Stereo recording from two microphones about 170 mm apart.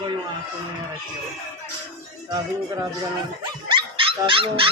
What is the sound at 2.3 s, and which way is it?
Speech, 20° right (ahead or behind).